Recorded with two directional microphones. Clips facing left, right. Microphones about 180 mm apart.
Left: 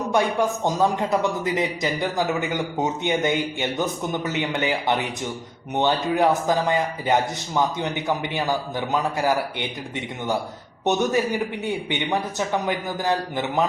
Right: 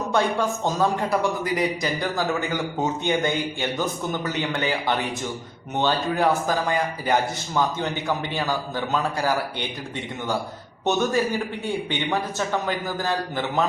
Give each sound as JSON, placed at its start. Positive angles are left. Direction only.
{"t": 0.1, "sound": "a man's voice", "side_deg": 15}
{"t": 10.8, "sound": "speech", "side_deg": 20}